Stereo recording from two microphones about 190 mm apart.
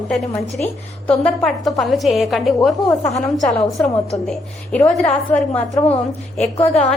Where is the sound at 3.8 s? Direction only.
Centre (ahead or behind).